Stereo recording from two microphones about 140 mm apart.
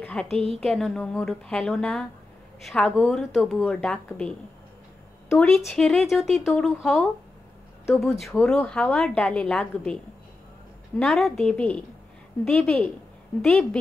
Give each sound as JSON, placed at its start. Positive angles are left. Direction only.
{"t": 0.0, "sound": "a sound", "side_deg": 5}
{"t": 0.4, "sound": "a woman's voice", "side_deg": -45}
{"t": 0.7, "sound": "speech", "side_deg": 0}
{"t": 5.3, "sound": "speech", "side_deg": 0}
{"t": 11.0, "sound": "speech", "side_deg": 0}